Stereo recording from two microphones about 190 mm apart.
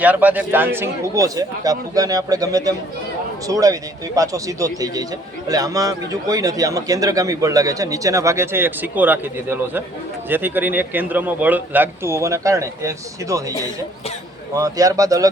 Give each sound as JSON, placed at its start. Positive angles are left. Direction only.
{"t": 0.0, "sound": "a man's voice", "side_deg": -10}